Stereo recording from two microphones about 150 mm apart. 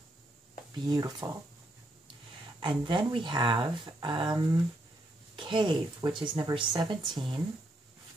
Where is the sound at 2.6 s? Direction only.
35° right (ahead or behind).